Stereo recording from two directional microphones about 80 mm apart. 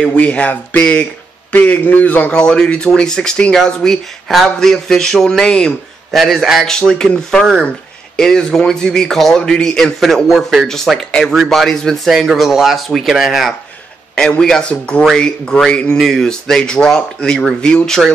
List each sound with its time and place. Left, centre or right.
0.1 s a man's voice: centre
11.1 s a man's voice: centre
14.4 s a man's voice: centre
16.0 s a man's voice: centre